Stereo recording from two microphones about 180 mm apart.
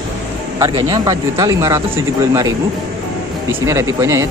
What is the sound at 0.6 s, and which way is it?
Speech, 20° right (ahead or behind).